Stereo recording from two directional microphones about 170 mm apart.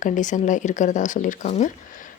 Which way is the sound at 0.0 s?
45° left (ahead or behind).